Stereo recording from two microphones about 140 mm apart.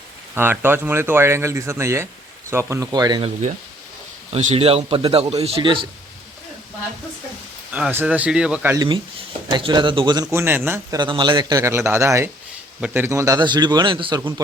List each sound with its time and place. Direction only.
0.3 s a man's voice: 15° right (ahead or behind)
2.9 s a man's voice: 30° right (ahead or behind)
4.3 s a man's voice: 45° right (ahead or behind)
7.7 s speech: 10° right (ahead or behind)
8.7 s a man's voice: 30° right (ahead or behind)
10.3 s speech: 15° right (ahead or behind)
10.9 s a man's voice: 30° right (ahead or behind)